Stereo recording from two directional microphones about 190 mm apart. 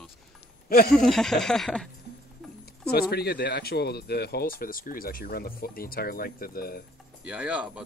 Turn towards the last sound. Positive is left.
turn(degrees=-5)  # may be behind; listen again after turning